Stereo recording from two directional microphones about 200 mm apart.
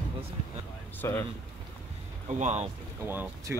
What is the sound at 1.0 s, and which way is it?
Speech, 15° left (ahead or behind).